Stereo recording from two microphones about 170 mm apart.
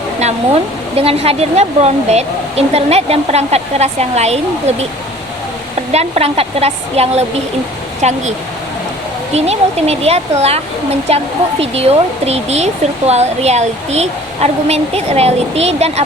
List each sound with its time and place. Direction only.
0.9 s speech: 35° right (ahead or behind)
5.9 s speech: 40° right (ahead or behind)